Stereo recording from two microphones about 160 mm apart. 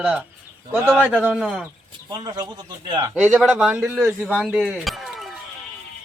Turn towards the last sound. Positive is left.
turn(degrees=0)  # may be behind; listen again after turning